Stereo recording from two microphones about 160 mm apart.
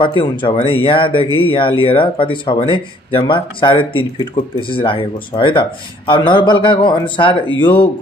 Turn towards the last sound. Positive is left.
turn(degrees=30)  # may be behind; listen again after turning